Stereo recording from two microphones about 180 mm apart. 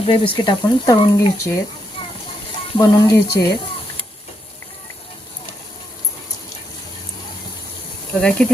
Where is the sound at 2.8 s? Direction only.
20° left (ahead or behind).